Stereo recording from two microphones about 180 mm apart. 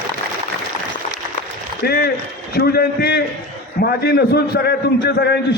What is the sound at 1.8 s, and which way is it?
A man's voice, 60° left (ahead or behind).